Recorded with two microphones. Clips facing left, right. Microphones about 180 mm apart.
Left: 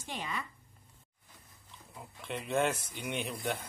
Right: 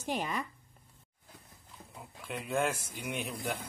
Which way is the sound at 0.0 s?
40° right (ahead or behind).